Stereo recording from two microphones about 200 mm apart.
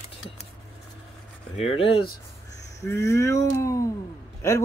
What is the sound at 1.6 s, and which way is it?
Speech, 30° left (ahead or behind).